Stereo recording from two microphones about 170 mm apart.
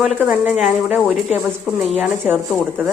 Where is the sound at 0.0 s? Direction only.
Centre (ahead or behind).